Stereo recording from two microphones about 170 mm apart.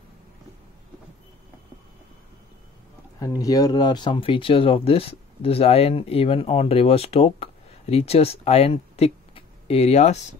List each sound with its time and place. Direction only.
3.2 s speech: 20° left (ahead or behind); by 10.2 s 40° left (ahead or behind)